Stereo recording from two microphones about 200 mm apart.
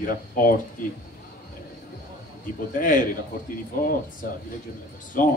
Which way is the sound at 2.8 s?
40° left (ahead or behind).